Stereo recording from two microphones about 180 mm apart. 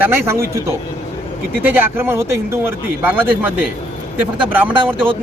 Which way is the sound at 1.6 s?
10° right (ahead or behind).